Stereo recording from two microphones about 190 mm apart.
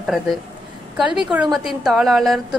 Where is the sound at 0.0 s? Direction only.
Centre (ahead or behind).